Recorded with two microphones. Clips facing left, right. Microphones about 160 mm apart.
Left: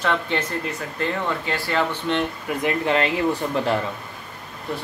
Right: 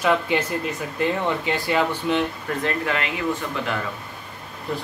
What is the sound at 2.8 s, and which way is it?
Speech, 30° left (ahead or behind).